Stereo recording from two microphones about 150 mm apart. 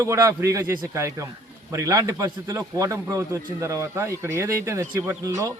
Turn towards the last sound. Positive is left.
turn(degrees=-20)  # may be behind; listen again after turning